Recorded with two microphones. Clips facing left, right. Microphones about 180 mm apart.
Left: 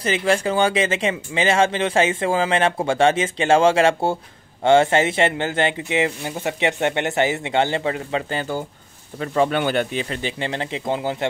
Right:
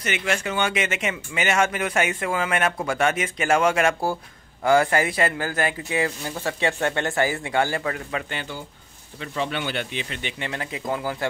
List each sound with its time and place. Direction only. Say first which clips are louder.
0.0 s speech: left 6 dB; 30° left (ahead or behind)
8.4 s speech: left 8 dB; 45° left (ahead or behind); by 11.2 s 25° left (ahead or behind)